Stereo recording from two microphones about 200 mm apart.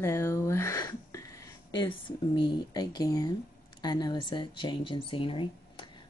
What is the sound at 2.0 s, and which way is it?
A woman's voice, 20° left (ahead or behind).